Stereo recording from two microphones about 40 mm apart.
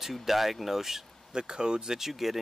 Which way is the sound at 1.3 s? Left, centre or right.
Centre.